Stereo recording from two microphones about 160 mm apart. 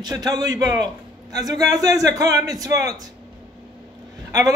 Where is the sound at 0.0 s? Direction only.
25° right (ahead or behind).